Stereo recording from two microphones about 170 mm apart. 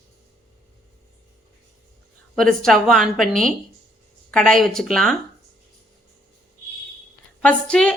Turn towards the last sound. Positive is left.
turn(degrees=5)  # may be behind; listen again after turning